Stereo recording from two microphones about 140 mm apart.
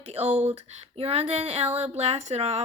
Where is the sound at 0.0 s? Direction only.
50° right (ahead or behind).